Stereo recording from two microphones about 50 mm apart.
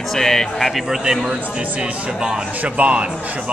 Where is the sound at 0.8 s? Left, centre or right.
Centre.